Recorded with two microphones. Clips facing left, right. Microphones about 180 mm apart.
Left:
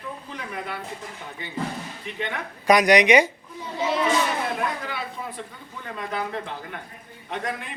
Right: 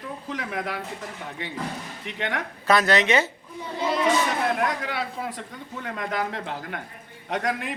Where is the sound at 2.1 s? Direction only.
75° right (ahead or behind).